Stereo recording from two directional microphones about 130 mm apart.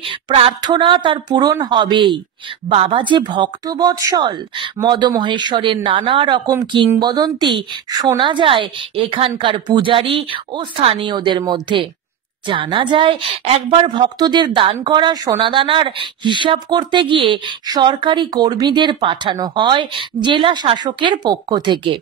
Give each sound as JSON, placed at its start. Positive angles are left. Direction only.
{"t": 0.3, "sound": "speech", "side_deg": -50}
{"t": 0.6, "sound": "speech", "side_deg": -35}
{"t": 13.5, "sound": "speech", "side_deg": -50}
{"t": 13.8, "sound": "speech", "side_deg": -35}